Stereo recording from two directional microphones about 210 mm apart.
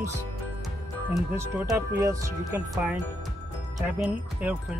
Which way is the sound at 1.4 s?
10° right (ahead or behind).